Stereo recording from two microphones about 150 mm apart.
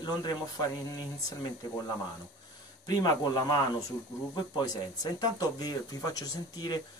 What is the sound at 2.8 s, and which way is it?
Speech, 25° left (ahead or behind).